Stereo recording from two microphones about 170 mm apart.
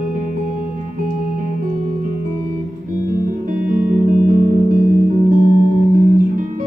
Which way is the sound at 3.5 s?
55° right (ahead or behind).